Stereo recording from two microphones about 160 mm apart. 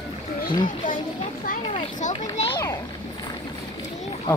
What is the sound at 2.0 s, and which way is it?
Speech, 50° left (ahead or behind).